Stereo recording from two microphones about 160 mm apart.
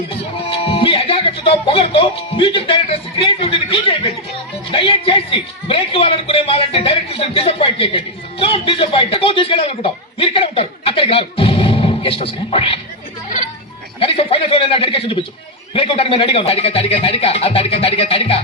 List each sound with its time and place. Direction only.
0.5 s a man's voice: 35° left (ahead or behind)
14.0 s a man's voice: 35° left (ahead or behind)